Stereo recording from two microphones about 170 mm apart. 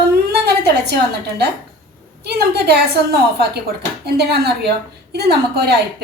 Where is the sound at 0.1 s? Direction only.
70° right (ahead or behind).